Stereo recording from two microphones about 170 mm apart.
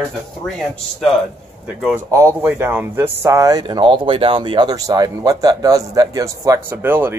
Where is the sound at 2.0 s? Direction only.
15° right (ahead or behind).